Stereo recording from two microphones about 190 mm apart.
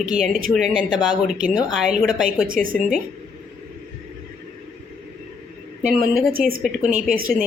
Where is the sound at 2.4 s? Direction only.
45° right (ahead or behind).